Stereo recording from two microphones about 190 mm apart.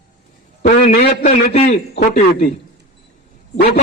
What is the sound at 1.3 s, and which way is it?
A man's voice, 35° left (ahead or behind).